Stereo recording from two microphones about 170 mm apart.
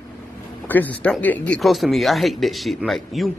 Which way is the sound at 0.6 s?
10° left (ahead or behind).